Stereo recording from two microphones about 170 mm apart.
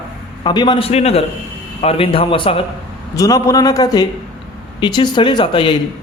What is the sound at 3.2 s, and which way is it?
A man's voice, 20° left (ahead or behind).